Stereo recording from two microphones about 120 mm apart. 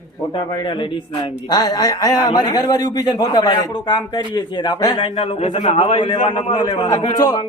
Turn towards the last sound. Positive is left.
turn(degrees=35)  # may be behind; listen again after turning